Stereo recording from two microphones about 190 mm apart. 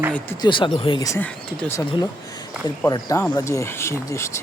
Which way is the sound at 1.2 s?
5° left (ahead or behind).